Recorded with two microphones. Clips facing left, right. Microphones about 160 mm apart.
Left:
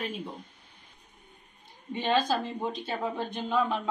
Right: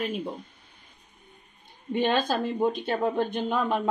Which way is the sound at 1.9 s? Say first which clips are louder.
Right 2 dB; 60° right (ahead or behind).